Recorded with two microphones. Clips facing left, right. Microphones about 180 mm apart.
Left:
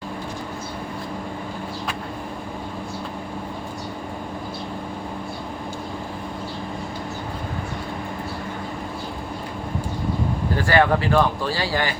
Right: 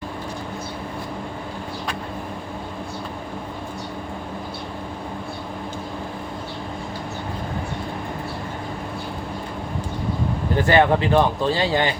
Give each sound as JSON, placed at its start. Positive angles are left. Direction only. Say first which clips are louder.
{"t": 10.6, "sound": "speech", "louder": "right 2 dB", "side_deg": -20}